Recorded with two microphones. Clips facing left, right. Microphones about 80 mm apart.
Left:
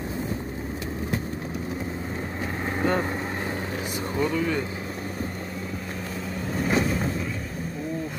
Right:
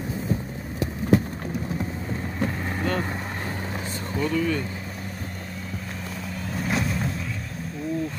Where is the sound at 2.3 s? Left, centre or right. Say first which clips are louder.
Right 1 dB; left.